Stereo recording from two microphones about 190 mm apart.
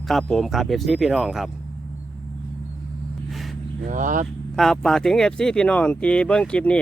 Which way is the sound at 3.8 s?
45° right (ahead or behind).